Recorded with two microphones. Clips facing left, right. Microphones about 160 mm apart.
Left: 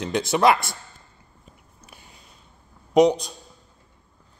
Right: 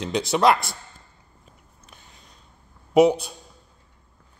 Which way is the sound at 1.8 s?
10° left (ahead or behind).